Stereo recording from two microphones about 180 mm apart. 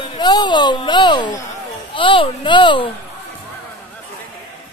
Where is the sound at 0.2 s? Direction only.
25° left (ahead or behind).